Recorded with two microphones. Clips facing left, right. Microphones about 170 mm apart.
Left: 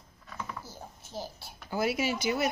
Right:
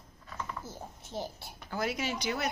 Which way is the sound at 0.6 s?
20° right (ahead or behind).